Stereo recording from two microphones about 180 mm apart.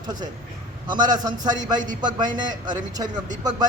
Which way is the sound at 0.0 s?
20° right (ahead or behind).